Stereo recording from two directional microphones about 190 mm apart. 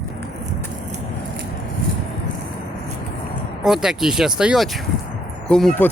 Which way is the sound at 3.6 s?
5° right (ahead or behind).